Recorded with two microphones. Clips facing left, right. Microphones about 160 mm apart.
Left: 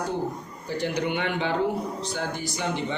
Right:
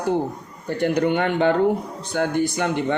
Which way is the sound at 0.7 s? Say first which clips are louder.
Right 7 dB; 55° right (ahead or behind).